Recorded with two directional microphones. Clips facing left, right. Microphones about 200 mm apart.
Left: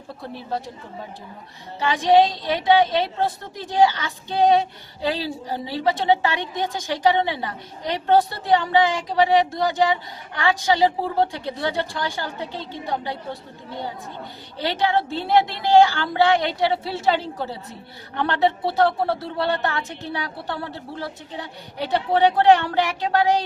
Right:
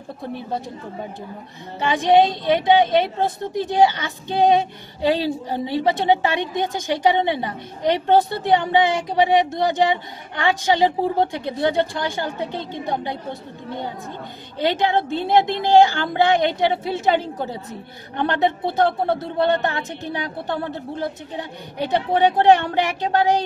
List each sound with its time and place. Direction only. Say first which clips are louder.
2.0 s a woman's voice: right 1 dB; 20° right (ahead or behind)